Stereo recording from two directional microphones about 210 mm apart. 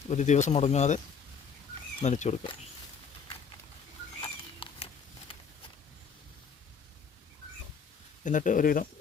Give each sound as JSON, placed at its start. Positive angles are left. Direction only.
{"t": 0.1, "sound": "speech", "side_deg": 35}
{"t": 4.2, "sound": "a sound", "side_deg": 25}
{"t": 8.2, "sound": "speech", "side_deg": 35}